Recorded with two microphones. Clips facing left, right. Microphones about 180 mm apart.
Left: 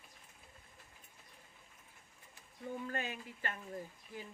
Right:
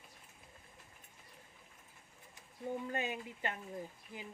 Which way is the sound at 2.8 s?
20° right (ahead or behind).